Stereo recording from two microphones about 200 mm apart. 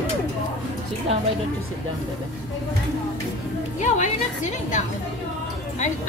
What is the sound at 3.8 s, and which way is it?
A woman's voice, 40° left (ahead or behind).